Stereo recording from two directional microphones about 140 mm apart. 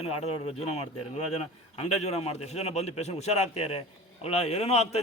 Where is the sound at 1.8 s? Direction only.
50° left (ahead or behind).